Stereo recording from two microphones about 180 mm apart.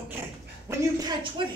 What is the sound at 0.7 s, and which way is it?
Speech, 20° right (ahead or behind).